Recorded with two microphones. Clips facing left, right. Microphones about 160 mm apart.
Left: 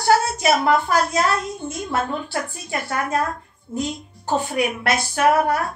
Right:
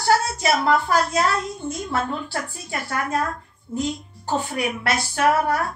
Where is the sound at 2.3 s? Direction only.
20° left (ahead or behind).